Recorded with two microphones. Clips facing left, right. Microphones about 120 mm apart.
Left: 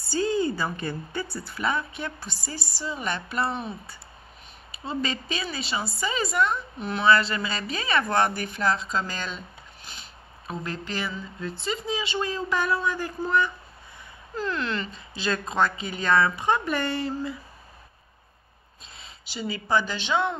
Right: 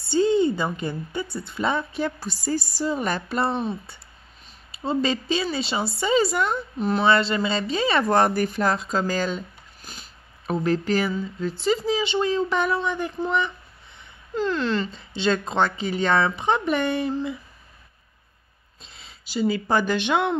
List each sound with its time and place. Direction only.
0.1 s a woman's voice: 25° right (ahead or behind)
9.8 s a sound: 40° right (ahead or behind)
11.6 s speech: 35° right (ahead or behind)
14.3 s speech: 30° right (ahead or behind)
19.2 s speech: 40° right (ahead or behind); by 20.3 s 65° right (ahead or behind)